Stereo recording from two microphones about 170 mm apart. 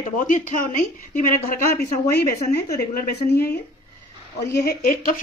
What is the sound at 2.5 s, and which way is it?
Speech, 75° left (ahead or behind).